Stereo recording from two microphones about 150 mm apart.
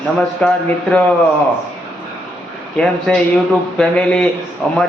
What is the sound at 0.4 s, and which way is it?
Speech, 5° left (ahead or behind).